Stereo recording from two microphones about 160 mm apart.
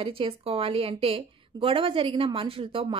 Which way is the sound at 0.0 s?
35° right (ahead or behind).